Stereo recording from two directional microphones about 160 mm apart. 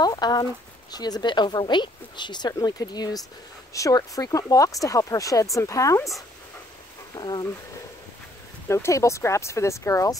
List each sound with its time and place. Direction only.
0.0 s speech: 25° left (ahead or behind)
7.2 s speech: 25° left (ahead or behind)
8.6 s speech: 15° left (ahead or behind)